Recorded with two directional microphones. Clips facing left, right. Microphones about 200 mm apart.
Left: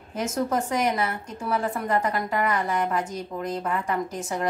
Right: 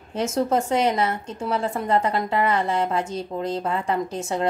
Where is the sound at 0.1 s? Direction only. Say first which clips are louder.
Right 4 dB; 25° right (ahead or behind).